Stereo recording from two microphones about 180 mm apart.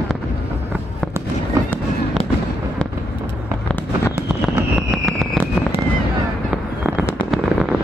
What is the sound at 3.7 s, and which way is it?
Fireworks, 15° left (ahead or behind).